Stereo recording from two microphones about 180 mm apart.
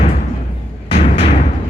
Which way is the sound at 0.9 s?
35° left (ahead or behind).